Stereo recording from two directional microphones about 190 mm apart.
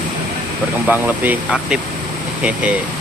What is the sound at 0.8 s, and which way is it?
Speech, 10° right (ahead or behind).